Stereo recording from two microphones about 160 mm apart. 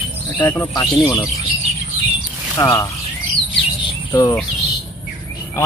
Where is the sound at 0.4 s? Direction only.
20° left (ahead or behind).